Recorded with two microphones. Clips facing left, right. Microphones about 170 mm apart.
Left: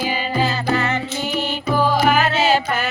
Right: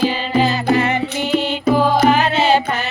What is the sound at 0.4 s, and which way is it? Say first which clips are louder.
Music: right 4 dB; 15° right (ahead or behind).